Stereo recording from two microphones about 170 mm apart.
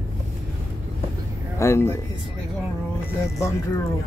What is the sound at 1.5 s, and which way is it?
Speech, 15° left (ahead or behind).